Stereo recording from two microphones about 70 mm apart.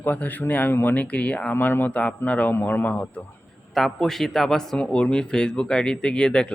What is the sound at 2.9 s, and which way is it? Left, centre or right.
Speech, centre.